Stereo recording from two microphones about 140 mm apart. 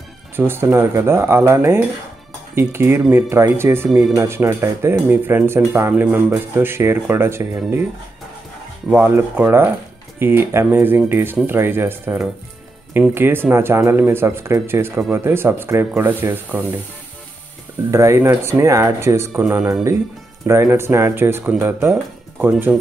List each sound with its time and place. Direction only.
0.4 s speech: 15° right (ahead or behind)
8.9 s speech: 15° right (ahead or behind)
17.9 s speech: 20° right (ahead or behind)